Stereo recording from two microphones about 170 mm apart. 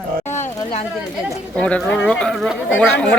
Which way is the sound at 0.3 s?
15° left (ahead or behind).